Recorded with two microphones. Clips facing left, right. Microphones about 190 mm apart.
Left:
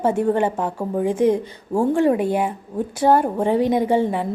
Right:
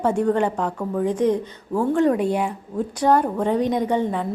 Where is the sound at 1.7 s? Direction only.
25° left (ahead or behind).